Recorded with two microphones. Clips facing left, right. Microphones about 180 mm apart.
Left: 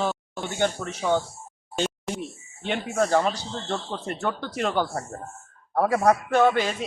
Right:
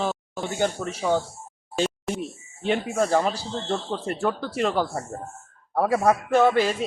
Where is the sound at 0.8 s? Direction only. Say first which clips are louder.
Right 2 dB; 30° right (ahead or behind).